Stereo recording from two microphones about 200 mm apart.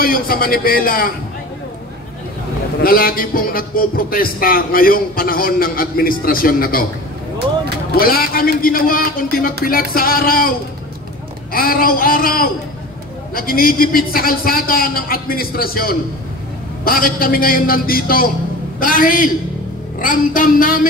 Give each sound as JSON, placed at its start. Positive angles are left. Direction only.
{"t": 0.0, "sound": "a man's voice", "side_deg": 45}
{"t": 2.8, "sound": "a man's voice", "side_deg": 45}
{"t": 7.9, "sound": "a man's voice", "side_deg": 50}
{"t": 11.5, "sound": "a man's voice", "side_deg": 45}